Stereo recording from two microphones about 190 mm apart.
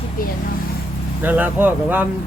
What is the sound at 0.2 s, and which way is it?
Vehicle, 50° left (ahead or behind).